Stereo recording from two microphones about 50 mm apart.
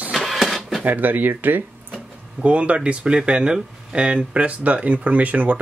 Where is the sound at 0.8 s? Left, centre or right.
Right.